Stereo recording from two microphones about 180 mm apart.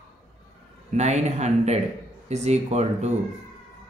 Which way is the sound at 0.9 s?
40° right (ahead or behind).